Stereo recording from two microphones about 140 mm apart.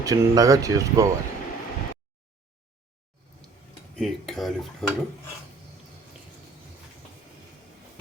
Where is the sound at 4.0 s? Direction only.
Centre (ahead or behind).